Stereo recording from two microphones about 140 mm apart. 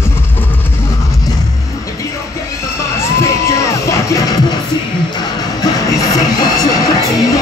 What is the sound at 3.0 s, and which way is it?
Music, 20° left (ahead or behind).